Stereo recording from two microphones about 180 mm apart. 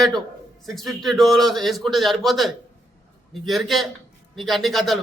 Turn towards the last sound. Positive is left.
turn(degrees=0)  # may be behind; listen again after turning